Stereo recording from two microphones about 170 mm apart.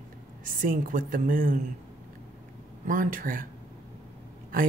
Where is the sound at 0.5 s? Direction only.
55° right (ahead or behind).